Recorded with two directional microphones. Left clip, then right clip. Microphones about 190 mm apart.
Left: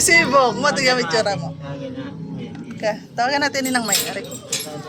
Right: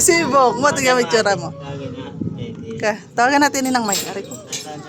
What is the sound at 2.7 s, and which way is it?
Speech, 60° right (ahead or behind).